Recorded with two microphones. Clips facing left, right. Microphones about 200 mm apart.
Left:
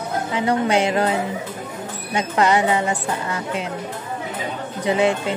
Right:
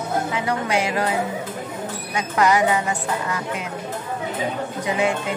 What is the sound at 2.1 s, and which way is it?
Speech, 30° left (ahead or behind).